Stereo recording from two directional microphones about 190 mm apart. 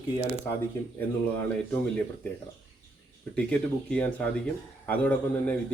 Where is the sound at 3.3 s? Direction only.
5° left (ahead or behind).